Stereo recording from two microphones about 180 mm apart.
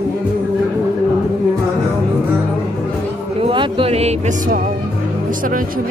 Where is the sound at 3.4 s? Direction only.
25° right (ahead or behind).